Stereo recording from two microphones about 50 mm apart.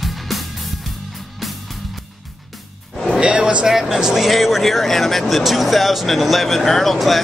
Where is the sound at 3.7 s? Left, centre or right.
Centre.